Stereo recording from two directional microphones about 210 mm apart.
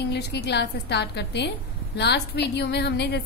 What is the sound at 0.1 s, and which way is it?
A woman's voice, 50° left (ahead or behind).